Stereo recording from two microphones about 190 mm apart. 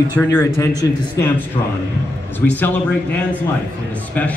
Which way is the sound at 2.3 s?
10° left (ahead or behind).